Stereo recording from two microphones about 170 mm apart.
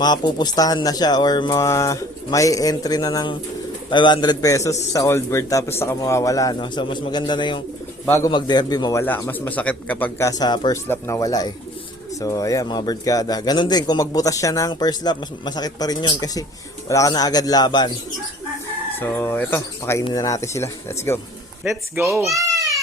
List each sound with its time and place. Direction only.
0.0 s speech: 25° left (ahead or behind)
8.0 s a man's voice: 15° left (ahead or behind)
8.3 s a man's voice: 25° left (ahead or behind)
10.8 s speech: 15° left (ahead or behind)
18.9 s a man's voice: 15° left (ahead or behind)
21.6 s speech: 15° right (ahead or behind)
22.3 s babbling: 20° right (ahead or behind)